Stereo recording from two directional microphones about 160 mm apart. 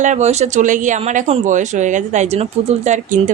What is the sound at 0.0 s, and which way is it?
A woman's voice, 45° right (ahead or behind).